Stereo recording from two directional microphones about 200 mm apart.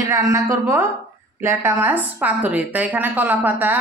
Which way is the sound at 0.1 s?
15° right (ahead or behind).